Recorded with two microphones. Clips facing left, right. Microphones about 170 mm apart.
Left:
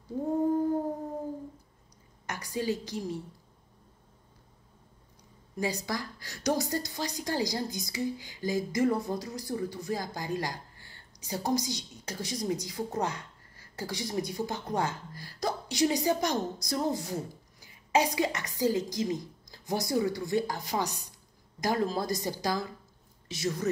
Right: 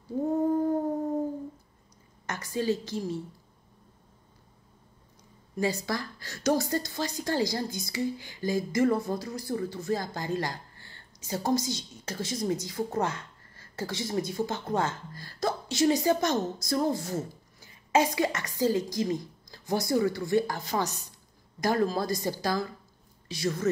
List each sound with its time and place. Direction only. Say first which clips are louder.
2.2 s a woman's voice: right 3 dB; 15° left (ahead or behind)
5.6 s a woman's voice: right 3 dB; 15° left (ahead or behind)